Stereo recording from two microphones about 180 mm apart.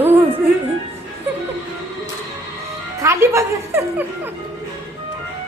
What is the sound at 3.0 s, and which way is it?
Music, 15° right (ahead or behind).